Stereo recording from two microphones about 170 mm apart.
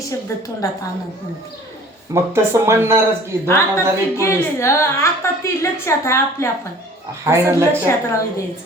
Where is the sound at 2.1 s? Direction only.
15° right (ahead or behind).